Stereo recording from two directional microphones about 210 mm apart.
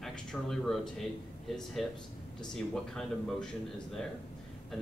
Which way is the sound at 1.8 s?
Centre (ahead or behind).